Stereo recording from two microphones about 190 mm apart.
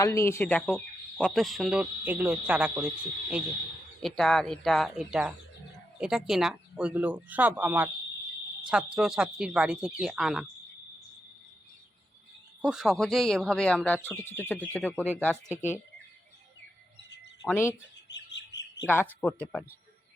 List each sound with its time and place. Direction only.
0.0 s speech: 15° left (ahead or behind); by 10.4 s centre (ahead or behind)
12.6 s speech: centre (ahead or behind)
17.4 s speech: 10° left (ahead or behind)
18.1 s chirp: 65° left (ahead or behind)
19.2 s speech: 5° left (ahead or behind)